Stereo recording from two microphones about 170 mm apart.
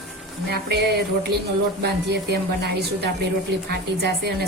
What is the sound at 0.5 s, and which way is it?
A woman's voice, 70° right (ahead or behind).